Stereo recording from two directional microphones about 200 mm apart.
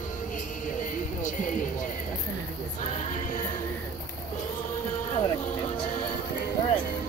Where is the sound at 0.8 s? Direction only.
40° left (ahead or behind).